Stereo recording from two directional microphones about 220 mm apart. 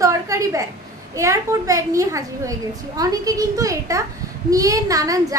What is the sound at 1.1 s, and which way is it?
A woman's voice, 15° right (ahead or behind).